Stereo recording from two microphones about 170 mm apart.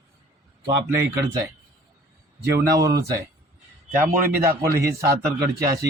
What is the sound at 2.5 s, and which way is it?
Speech, 20° right (ahead or behind).